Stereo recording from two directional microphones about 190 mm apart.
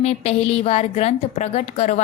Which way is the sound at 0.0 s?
30° left (ahead or behind).